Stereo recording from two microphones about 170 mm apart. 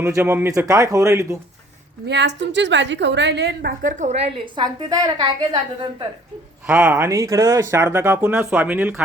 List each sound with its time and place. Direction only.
0.0 s speech: 15° right (ahead or behind)
2.0 s a woman's voice: 90° right; by 3.8 s 75° right (ahead or behind)
3.8 s a woman's voice: 45° right (ahead or behind); by 5.9 s 25° right (ahead or behind)
6.7 s speech: 10° right (ahead or behind)